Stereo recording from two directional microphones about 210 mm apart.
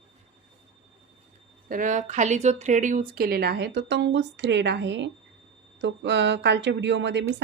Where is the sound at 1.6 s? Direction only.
40° right (ahead or behind); by 7.4 s 60° right (ahead or behind).